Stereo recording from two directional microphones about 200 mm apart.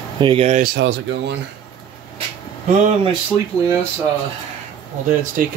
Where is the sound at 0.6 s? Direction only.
60° right (ahead or behind).